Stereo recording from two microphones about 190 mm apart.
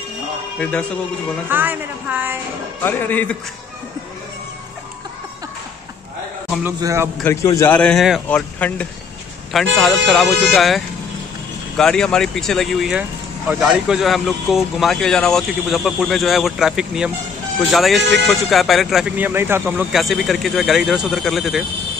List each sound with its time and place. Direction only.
0.6 s speech: 5° left (ahead or behind)
1.5 s a woman's voice: 10° right (ahead or behind)
2.8 s speech: 10° left (ahead or behind)
6.6 s a man's voice: 15° right (ahead or behind)
7.2 s a man's voice: 15° left (ahead or behind); by 19.9 s 10° right (ahead or behind)
19.9 s a man's voice: centre (ahead or behind)